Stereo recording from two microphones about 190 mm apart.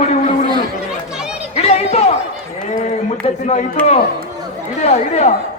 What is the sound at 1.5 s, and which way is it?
Music, 35° left (ahead or behind).